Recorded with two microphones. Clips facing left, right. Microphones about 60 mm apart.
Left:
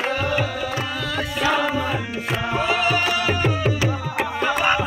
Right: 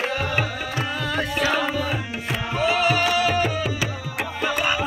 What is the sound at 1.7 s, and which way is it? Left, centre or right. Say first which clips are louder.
Tabla: left 2 dB; centre.